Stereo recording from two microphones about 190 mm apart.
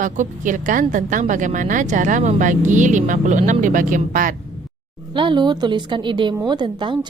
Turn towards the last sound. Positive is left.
turn(degrees=-25)  # may be behind; listen again after turning